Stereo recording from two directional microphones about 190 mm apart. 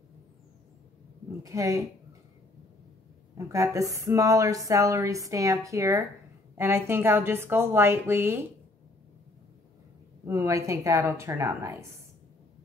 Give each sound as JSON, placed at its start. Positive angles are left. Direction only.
{"t": 1.4, "sound": "a woman's voice", "side_deg": -15}
{"t": 3.3, "sound": "a woman's voice", "side_deg": -15}
{"t": 10.2, "sound": "a woman's voice", "side_deg": -15}